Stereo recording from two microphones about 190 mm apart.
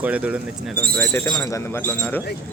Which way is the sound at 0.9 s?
10° left (ahead or behind).